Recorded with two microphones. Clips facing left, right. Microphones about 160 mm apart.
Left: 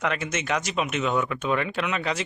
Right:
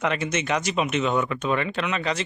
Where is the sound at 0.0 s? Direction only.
Centre (ahead or behind).